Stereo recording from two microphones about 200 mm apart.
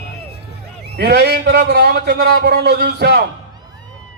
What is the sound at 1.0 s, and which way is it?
A man's voice, 55° right (ahead or behind).